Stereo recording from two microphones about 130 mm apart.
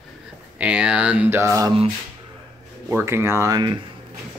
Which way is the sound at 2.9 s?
20° right (ahead or behind).